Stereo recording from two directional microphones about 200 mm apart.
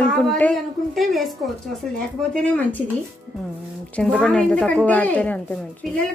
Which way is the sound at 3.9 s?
5° left (ahead or behind).